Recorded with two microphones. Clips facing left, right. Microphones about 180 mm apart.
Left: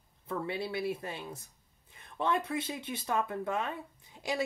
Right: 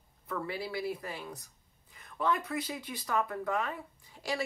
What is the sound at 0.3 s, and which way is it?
Speech, 25° left (ahead or behind).